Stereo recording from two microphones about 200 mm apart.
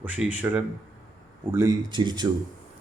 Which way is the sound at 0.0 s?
10° right (ahead or behind).